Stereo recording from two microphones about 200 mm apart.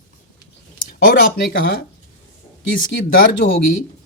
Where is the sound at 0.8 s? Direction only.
45° left (ahead or behind).